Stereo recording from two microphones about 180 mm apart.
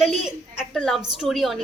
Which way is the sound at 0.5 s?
Centre (ahead or behind).